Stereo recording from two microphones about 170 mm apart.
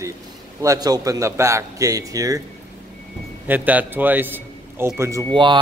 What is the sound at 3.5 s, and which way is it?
A man's voice, 10° right (ahead or behind).